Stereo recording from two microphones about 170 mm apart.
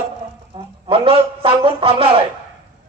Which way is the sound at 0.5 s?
30° right (ahead or behind).